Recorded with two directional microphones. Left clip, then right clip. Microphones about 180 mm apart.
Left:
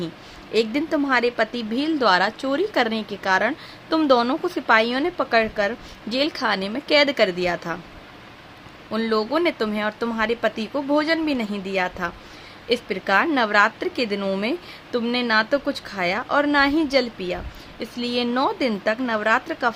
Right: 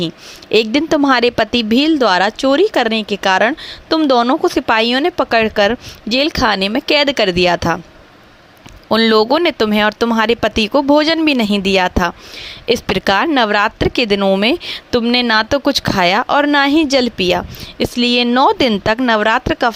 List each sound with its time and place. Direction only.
0.5 s speech: 45° right (ahead or behind)
8.9 s speech: 50° right (ahead or behind)